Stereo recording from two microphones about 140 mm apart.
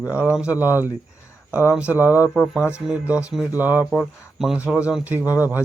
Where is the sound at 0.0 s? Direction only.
10° right (ahead or behind).